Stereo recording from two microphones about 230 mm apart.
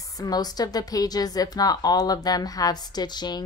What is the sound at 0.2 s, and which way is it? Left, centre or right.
A woman's voice, centre.